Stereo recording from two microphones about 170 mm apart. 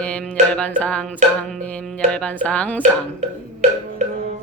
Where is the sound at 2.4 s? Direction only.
10° left (ahead or behind).